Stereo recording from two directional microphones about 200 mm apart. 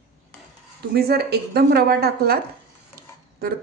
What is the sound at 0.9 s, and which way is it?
Speech, 50° right (ahead or behind).